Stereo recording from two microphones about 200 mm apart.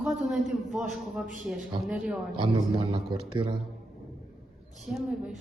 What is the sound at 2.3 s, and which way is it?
A man's voice, 25° right (ahead or behind).